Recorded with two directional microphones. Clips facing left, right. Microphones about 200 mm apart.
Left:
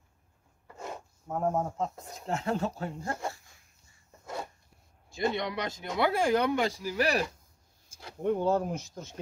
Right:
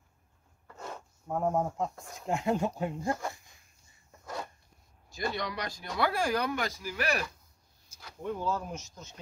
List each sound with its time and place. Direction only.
0.7 s filing: 10° left (ahead or behind)
1.3 s speech: centre (ahead or behind)
2.2 s speech: 15° right (ahead or behind)
5.1 s speech: 25° left (ahead or behind)
8.2 s speech: 60° left (ahead or behind)